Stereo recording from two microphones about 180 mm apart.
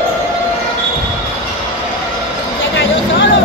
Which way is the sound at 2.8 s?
80° left.